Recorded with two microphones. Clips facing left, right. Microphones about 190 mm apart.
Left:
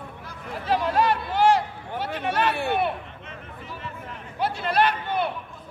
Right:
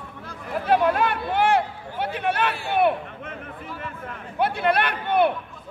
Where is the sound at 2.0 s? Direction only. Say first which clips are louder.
Right 1 dB; 60° right (ahead or behind).